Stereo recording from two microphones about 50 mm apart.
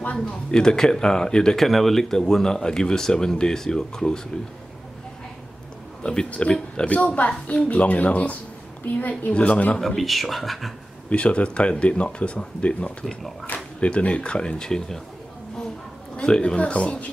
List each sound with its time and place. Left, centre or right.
0.0 s speech: left
0.5 s speech: centre
1.6 s speech: centre
6.0 s speech: left
9.8 s speech: centre
11.1 s speech: left
13.0 s speech: centre
13.7 s speech: left
16.2 s speech: centre